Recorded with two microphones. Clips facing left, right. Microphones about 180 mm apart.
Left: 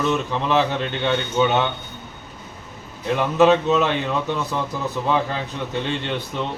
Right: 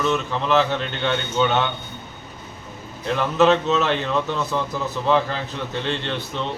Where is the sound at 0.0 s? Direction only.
15° left (ahead or behind).